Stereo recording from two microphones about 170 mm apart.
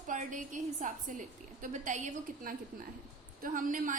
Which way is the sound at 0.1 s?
50° right (ahead or behind).